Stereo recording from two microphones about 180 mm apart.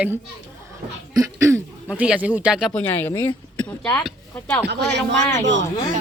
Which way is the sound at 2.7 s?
10° left (ahead or behind).